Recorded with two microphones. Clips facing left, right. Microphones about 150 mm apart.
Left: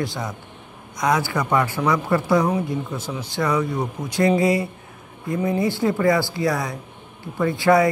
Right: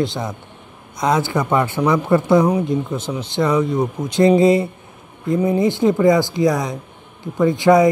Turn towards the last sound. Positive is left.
turn(degrees=-20)  # may be behind; listen again after turning